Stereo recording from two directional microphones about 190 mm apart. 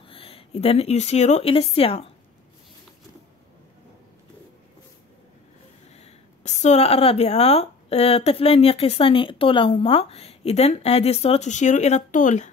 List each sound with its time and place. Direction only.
0.0 s speech: 30° left (ahead or behind)
5.9 s speech: 35° left (ahead or behind)